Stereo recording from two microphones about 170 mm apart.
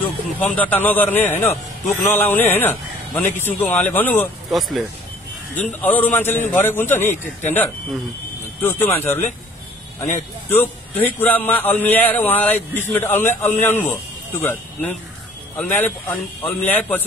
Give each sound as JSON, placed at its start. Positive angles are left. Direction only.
{"t": 0.4, "sound": "a man's voice", "side_deg": 10}
{"t": 4.5, "sound": "a man's voice", "side_deg": 0}
{"t": 8.7, "sound": "a man's voice", "side_deg": 15}
{"t": 10.5, "sound": "a man's voice", "side_deg": 10}